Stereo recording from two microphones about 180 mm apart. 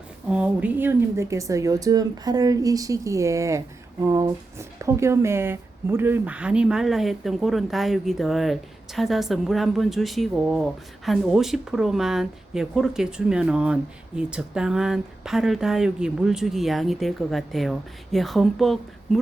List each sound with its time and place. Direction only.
0.3 s a woman's voice: 5° right (ahead or behind)